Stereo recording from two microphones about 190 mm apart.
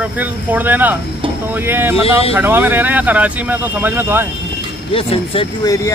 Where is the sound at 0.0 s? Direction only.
10° right (ahead or behind).